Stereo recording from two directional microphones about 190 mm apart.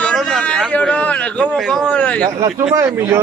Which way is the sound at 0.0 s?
5° left (ahead or behind).